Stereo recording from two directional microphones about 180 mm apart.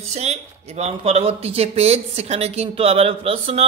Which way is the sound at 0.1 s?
35° right (ahead or behind).